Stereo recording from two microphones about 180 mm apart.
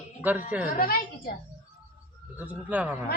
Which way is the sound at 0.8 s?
55° left (ahead or behind).